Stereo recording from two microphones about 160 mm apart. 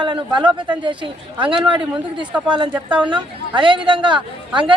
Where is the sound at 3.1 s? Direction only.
30° right (ahead or behind).